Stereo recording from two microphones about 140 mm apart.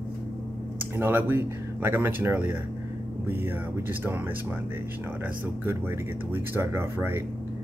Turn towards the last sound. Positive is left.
turn(degrees=-15)  # may be behind; listen again after turning